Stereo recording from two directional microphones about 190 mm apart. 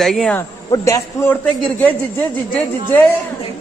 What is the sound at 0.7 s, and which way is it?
A man's voice, 15° left (ahead or behind).